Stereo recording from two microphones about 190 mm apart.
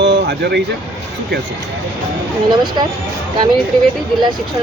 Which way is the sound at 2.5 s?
25° right (ahead or behind).